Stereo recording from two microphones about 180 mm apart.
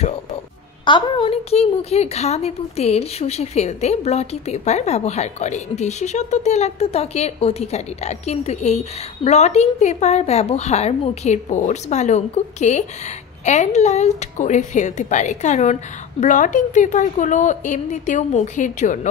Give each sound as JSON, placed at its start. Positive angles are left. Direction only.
{"t": 0.8, "sound": "a woman's voice", "side_deg": 25}